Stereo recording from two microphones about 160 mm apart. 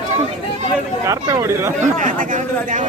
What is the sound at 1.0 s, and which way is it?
Chatter, 20° right (ahead or behind).